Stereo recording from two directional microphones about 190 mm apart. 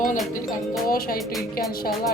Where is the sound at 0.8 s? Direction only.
50° left (ahead or behind).